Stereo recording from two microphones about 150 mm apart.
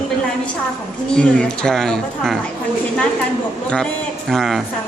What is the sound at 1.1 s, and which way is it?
Speech, 5° left (ahead or behind).